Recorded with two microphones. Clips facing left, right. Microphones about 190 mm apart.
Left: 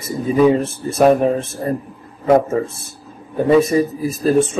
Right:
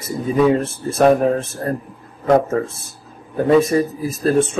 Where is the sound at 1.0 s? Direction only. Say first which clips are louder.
Left 1 dB; centre (ahead or behind).